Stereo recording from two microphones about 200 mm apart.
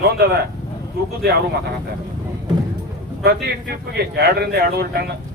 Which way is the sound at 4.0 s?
55° right (ahead or behind).